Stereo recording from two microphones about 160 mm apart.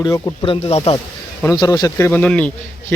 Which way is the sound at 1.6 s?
25° left (ahead or behind).